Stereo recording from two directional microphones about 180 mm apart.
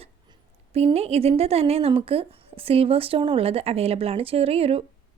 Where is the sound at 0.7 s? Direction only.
35° right (ahead or behind).